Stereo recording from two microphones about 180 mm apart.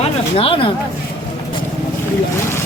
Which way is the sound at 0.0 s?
30° left (ahead or behind).